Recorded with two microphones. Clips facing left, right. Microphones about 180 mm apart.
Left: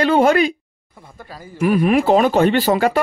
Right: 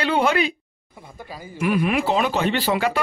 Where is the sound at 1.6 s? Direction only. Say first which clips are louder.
Left 6 dB; 40° left (ahead or behind).